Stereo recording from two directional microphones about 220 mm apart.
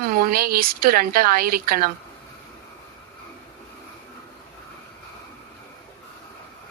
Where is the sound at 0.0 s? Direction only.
40° right (ahead or behind).